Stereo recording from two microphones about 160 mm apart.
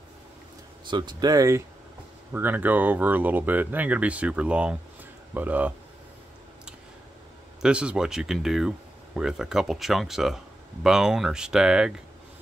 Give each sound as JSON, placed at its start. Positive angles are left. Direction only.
{"t": 0.8, "sound": "speech", "side_deg": -30}
{"t": 2.3, "sound": "speech", "side_deg": -10}
{"t": 7.6, "sound": "speech", "side_deg": -5}